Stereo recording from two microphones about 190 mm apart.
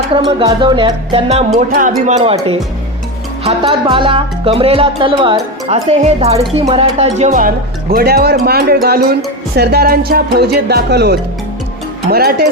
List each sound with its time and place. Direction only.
0.3 s speech: 25° right (ahead or behind)
1.5 s speech: 45° right (ahead or behind)
2.0 s music: 30° right (ahead or behind)
6.5 s speech: 30° right (ahead or behind); by 9.1 s 55° right (ahead or behind)
9.6 s music: 55° right (ahead or behind)